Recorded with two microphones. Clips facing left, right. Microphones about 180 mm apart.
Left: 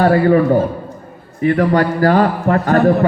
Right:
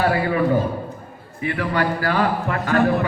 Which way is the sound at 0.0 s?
45° left (ahead or behind).